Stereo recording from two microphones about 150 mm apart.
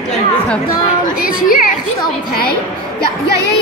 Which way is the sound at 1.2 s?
70° left (ahead or behind).